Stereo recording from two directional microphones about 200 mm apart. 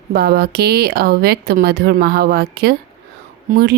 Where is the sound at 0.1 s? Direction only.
50° right (ahead or behind).